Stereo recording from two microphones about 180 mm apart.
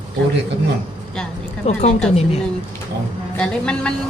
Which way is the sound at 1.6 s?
35° left (ahead or behind).